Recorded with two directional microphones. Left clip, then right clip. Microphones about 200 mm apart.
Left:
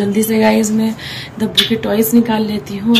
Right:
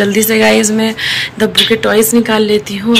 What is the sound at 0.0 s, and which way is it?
A woman's voice, 5° left (ahead or behind).